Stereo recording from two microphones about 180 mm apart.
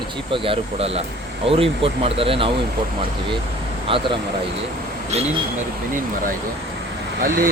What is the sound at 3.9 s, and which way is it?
Speech, 30° right (ahead or behind).